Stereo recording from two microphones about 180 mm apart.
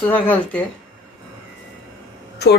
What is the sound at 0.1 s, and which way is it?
Speech, 10° left (ahead or behind).